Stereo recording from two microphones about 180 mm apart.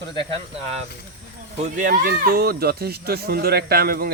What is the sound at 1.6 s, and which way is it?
Speech, 45° right (ahead or behind).